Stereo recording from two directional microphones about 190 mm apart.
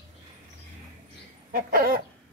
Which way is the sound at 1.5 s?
50° right (ahead or behind).